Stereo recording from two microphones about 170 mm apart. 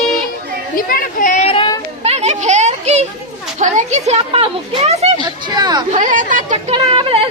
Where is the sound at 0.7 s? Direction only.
55° left (ahead or behind).